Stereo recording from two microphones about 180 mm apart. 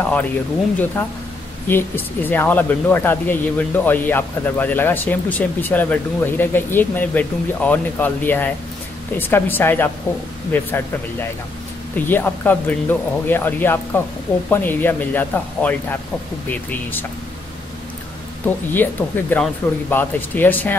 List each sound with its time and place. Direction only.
0.0 s speech: 10° left (ahead or behind)
18.7 s speech: 10° left (ahead or behind)